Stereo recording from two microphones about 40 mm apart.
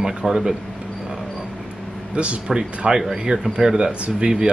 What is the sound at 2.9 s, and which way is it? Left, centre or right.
Speech, centre.